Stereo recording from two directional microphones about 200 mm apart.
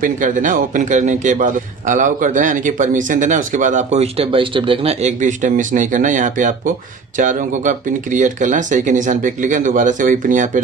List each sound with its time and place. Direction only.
0.0 s a man's voice: 40° right (ahead or behind)